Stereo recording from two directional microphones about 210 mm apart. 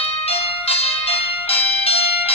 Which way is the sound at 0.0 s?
30° left (ahead or behind).